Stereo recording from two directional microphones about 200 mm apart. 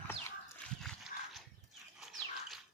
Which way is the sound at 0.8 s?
Centre (ahead or behind).